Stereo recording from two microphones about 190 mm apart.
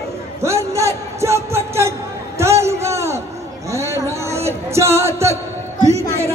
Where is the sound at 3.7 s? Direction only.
15° right (ahead or behind).